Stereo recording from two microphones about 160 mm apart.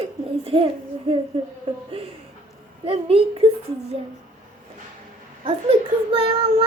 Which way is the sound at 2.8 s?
35° right (ahead or behind).